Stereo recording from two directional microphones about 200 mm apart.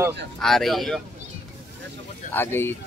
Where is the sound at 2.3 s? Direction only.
10° left (ahead or behind).